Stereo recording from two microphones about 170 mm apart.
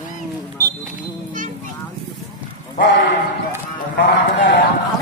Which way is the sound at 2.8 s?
90° left.